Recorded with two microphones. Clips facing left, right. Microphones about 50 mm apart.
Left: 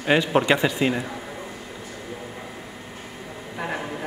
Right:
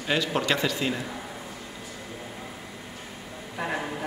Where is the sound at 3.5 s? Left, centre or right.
Centre.